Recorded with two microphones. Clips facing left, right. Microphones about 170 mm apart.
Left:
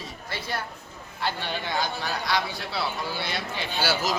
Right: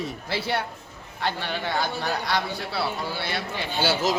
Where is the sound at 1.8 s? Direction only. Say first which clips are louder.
Right 2 dB; 60° right (ahead or behind).